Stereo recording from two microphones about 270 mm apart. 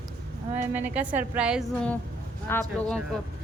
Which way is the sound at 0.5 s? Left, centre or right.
Centre.